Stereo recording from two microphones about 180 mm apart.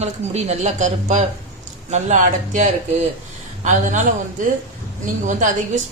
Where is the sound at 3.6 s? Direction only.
45° right (ahead or behind).